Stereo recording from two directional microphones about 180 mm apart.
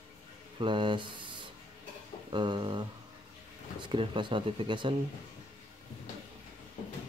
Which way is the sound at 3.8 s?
25° right (ahead or behind).